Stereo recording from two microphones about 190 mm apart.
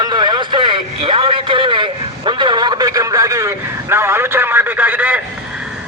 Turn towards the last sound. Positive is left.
turn(degrees=-10)  # may be behind; listen again after turning